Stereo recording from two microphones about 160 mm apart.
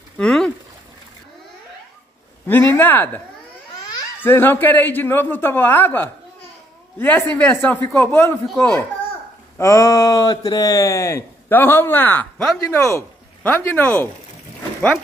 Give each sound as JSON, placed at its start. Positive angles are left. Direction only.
{"t": 0.2, "sound": "a sound", "side_deg": 0}
{"t": 2.4, "sound": "a man's voice", "side_deg": 15}
{"t": 4.2, "sound": "a man's voice", "side_deg": 15}